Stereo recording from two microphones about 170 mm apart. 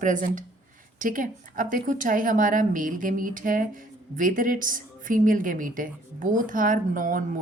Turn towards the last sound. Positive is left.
turn(degrees=-55)  # may be behind; listen again after turning